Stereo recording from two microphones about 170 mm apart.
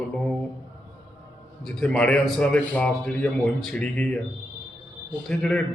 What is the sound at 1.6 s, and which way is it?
A man's voice, 5° left (ahead or behind).